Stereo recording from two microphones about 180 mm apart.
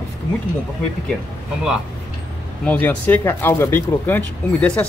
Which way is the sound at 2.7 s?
10° left (ahead or behind).